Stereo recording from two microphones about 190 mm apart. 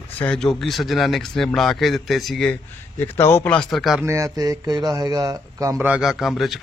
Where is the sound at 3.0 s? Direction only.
15° left (ahead or behind).